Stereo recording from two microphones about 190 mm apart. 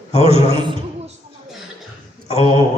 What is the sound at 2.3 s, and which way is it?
Speech, 30° right (ahead or behind).